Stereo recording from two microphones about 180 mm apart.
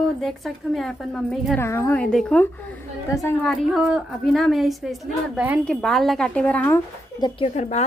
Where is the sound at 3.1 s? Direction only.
15° left (ahead or behind).